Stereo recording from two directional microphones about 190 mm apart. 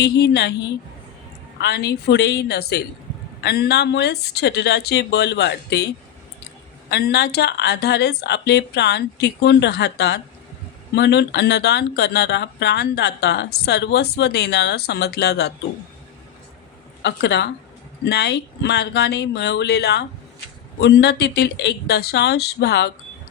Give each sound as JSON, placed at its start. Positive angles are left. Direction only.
{"t": 0.0, "sound": "speech", "side_deg": 60}
{"t": 1.5, "sound": "speech", "side_deg": 60}
{"t": 6.9, "sound": "speech", "side_deg": 60}
{"t": 17.0, "sound": "speech", "side_deg": 65}